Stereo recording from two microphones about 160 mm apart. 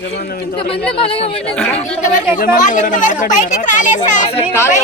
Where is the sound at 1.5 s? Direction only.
5° left (ahead or behind).